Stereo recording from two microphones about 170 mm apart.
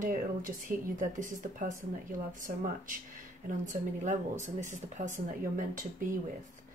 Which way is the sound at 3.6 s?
45° right (ahead or behind).